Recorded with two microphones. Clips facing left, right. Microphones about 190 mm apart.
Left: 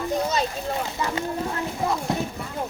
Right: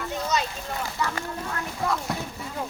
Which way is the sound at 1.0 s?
25° left (ahead or behind).